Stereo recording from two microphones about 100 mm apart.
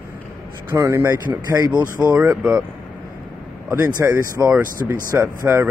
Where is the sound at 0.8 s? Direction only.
25° right (ahead or behind).